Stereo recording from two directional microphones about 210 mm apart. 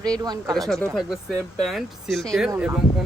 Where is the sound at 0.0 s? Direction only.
15° right (ahead or behind).